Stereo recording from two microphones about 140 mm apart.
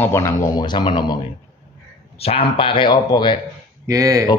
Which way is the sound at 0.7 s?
35° left (ahead or behind).